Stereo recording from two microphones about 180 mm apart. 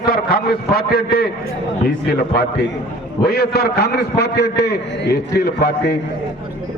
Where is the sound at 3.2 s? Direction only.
65° left (ahead or behind).